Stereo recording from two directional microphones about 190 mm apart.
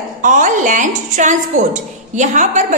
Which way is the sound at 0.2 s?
40° right (ahead or behind).